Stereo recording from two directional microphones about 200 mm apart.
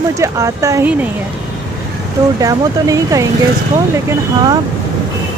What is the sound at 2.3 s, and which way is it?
Speech, 15° right (ahead or behind).